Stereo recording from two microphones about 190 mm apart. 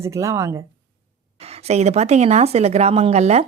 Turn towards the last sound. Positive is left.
turn(degrees=-35)  # may be behind; listen again after turning